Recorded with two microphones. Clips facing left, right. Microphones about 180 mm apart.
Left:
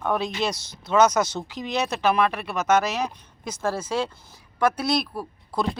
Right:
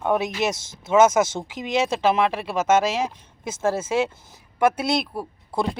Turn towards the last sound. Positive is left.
turn(degrees=-25)  # may be behind; listen again after turning